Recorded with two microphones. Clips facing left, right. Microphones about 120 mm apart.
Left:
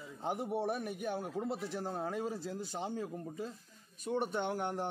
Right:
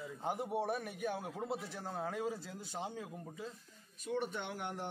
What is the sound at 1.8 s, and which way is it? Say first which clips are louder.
Speech: left 1 dB; 30° left (ahead or behind).